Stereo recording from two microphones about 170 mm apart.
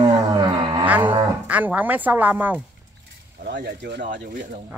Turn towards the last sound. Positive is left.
turn(degrees=-55)  # may be behind; listen again after turning